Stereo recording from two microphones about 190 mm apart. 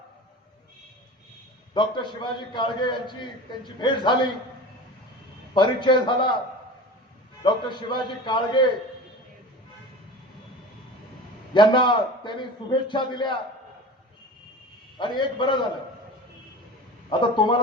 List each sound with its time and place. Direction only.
1.7 s a man's voice: 25° left (ahead or behind)
5.5 s a man's voice: 25° left (ahead or behind)
7.4 s a man's voice: 25° left (ahead or behind)
11.5 s a man's voice: 25° left (ahead or behind)
14.9 s a man's voice: 25° left (ahead or behind)
17.1 s a man's voice: 25° left (ahead or behind)